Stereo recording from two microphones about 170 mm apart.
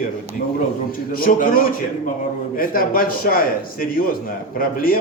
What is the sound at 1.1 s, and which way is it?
Speech, 55° left (ahead or behind).